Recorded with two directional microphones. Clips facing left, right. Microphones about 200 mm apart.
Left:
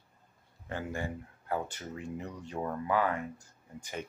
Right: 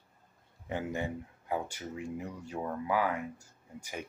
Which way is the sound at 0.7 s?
20° right (ahead or behind).